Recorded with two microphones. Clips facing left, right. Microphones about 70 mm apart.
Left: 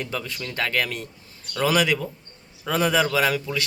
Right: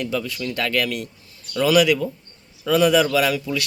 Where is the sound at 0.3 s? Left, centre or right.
Left.